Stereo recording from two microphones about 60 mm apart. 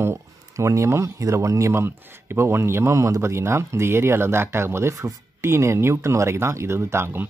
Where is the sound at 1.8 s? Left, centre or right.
Right.